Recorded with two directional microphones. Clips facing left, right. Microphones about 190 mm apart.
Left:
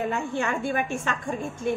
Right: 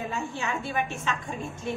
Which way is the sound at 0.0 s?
55° left (ahead or behind).